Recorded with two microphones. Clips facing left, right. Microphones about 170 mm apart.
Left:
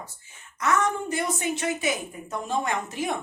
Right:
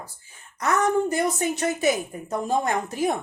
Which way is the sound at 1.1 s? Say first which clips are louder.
Right 4 dB; 40° right (ahead or behind).